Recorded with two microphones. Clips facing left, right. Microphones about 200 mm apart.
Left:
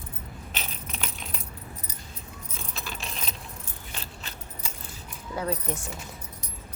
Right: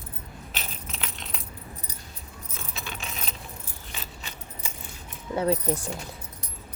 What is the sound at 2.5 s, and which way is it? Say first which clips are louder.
Keys jangling: even; centre (ahead or behind).